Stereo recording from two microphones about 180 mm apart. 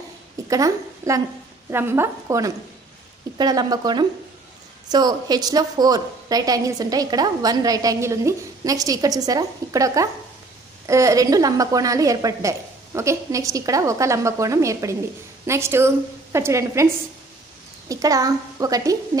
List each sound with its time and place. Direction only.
0.5 s a woman's voice: 20° right (ahead or behind)